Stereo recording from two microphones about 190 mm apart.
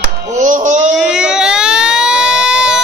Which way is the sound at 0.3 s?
40° right (ahead or behind).